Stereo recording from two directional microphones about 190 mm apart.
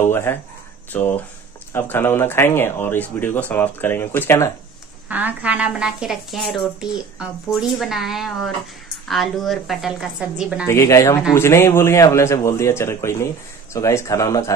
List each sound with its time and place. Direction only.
0.0 s speech: 15° left (ahead or behind)
5.0 s speech: 10° right (ahead or behind)
10.7 s speech: 15° left (ahead or behind)